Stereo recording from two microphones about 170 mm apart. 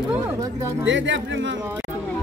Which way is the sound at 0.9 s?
90° right.